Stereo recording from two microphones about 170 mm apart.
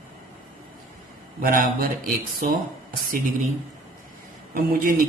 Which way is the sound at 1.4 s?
55° right (ahead or behind).